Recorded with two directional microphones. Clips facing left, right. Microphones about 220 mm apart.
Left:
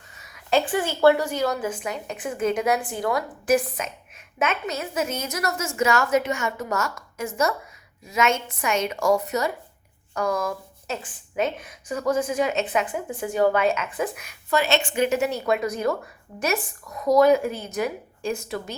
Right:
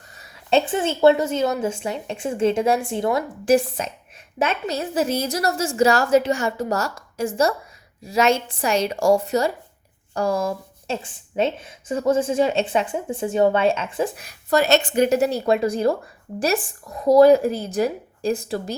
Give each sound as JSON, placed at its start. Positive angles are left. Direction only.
{"t": 0.1, "sound": "a woman's voice", "side_deg": -35}